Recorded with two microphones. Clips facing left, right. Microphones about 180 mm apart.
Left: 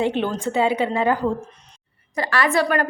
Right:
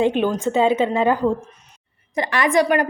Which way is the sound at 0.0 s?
15° right (ahead or behind).